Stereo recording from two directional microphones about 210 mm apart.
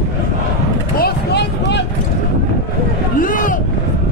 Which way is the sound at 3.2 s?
40° left (ahead or behind).